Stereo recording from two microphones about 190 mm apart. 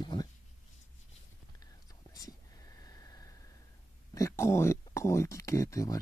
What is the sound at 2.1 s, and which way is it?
Whispering, 20° left (ahead or behind).